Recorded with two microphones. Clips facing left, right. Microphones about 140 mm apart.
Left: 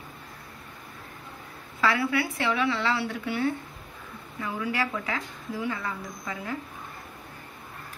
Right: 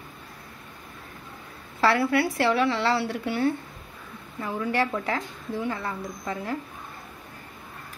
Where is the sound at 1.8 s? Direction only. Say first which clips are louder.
Right 4 dB; 35° right (ahead or behind).